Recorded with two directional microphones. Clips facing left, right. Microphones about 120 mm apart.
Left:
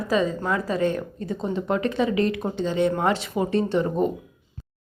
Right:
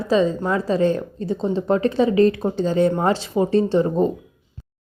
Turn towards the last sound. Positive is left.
turn(degrees=-30)  # may be behind; listen again after turning